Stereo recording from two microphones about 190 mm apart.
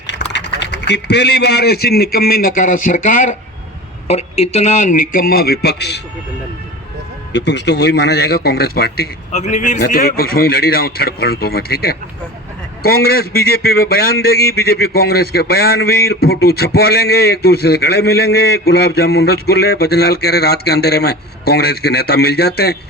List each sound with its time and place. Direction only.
0.1 s a man's voice: 65° left (ahead or behind)
7.3 s a man's voice: 65° left (ahead or behind)
9.3 s a man's voice: 40° left (ahead or behind); by 22.8 s 55° left (ahead or behind)